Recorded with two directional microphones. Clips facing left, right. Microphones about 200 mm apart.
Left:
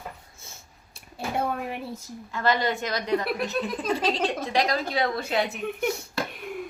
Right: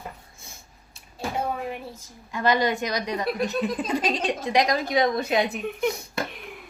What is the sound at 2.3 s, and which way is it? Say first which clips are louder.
A woman's voice: right 2 dB; 15° right (ahead or behind).